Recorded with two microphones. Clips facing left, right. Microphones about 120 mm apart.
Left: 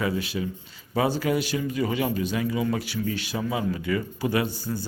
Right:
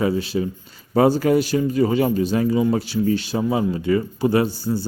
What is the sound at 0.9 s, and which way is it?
Speech, 45° right (ahead or behind).